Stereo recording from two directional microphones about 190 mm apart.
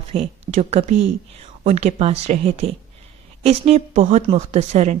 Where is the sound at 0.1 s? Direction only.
35° right (ahead or behind).